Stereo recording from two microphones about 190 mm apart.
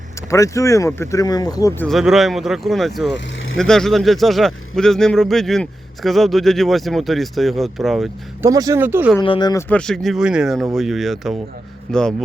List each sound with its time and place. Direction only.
0.3 s speech: 15° left (ahead or behind)
1.8 s speech: centre (ahead or behind)
8.4 s speech: 15° right (ahead or behind)
9.2 s speech: 25° left (ahead or behind)
9.6 s speech: 5° left (ahead or behind)